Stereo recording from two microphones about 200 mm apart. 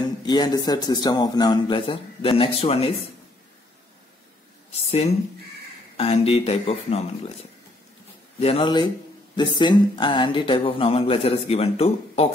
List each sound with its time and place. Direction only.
0.2 s a man's voice: 20° left (ahead or behind)
4.7 s speech: 30° left (ahead or behind)
8.4 s a man's voice: 30° left (ahead or behind)